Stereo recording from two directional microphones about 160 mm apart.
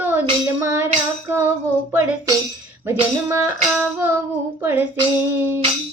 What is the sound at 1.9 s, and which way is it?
Music, 15° right (ahead or behind).